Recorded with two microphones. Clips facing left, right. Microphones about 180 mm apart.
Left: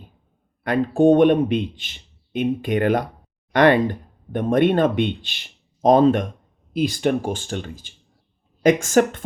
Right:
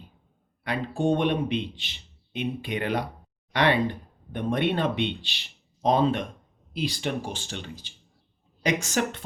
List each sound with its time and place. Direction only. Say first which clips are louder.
0.6 s a man's voice: left 10 dB; 50° left (ahead or behind)